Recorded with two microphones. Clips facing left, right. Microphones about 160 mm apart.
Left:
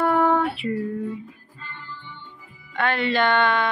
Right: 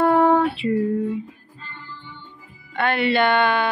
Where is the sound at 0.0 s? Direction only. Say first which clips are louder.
Right 4 dB; 30° right (ahead or behind).